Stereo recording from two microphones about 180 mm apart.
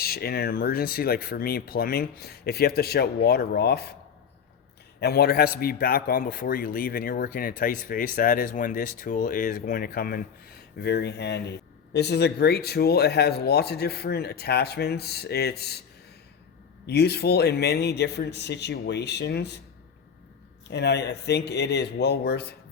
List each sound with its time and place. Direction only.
0.0 s a man's voice: 60° left (ahead or behind)
4.9 s a man's voice: 60° left (ahead or behind)
16.8 s speech: 65° left (ahead or behind)
20.7 s speech: 70° left (ahead or behind)